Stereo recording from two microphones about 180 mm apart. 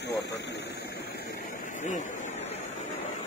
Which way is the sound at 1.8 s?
40° left (ahead or behind).